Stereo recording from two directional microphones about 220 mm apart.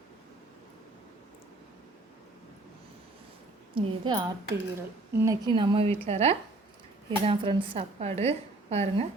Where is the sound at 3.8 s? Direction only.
20° right (ahead or behind).